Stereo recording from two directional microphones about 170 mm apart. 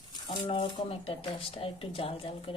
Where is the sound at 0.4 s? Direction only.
35° left (ahead or behind).